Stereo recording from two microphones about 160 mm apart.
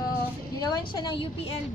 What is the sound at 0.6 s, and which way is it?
Speech, 25° left (ahead or behind).